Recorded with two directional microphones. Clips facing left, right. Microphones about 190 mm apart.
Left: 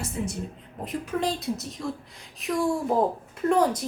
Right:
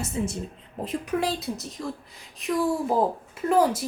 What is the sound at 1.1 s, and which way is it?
A woman's voice, 5° right (ahead or behind).